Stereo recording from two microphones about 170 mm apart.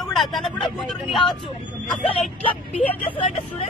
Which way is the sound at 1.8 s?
35° left (ahead or behind).